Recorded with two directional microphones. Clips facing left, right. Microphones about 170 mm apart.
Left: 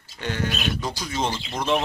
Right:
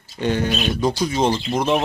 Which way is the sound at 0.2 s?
20° right (ahead or behind).